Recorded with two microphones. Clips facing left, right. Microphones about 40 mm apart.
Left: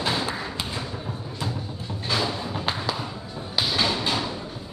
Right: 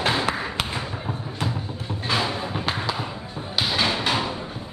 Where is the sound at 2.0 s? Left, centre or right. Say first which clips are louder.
Right 2 dB; right.